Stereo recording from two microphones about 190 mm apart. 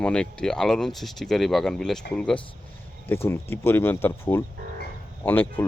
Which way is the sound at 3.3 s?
10° left (ahead or behind).